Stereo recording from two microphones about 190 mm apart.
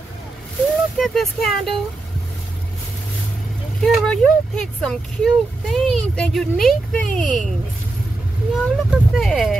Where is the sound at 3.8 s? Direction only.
5° left (ahead or behind).